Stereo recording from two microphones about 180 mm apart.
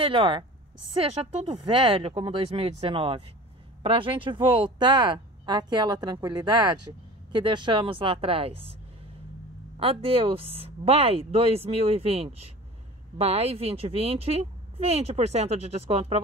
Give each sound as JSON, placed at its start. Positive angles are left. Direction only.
{"t": 0.0, "sound": "speech", "side_deg": -30}
{"t": 1.5, "sound": "a woman's voice", "side_deg": -25}
{"t": 9.8, "sound": "a woman's voice", "side_deg": -30}